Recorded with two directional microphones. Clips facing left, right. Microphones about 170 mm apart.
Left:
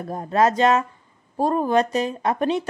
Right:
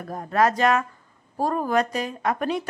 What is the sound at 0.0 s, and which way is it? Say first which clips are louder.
Speech: left 2 dB; 25° left (ahead or behind).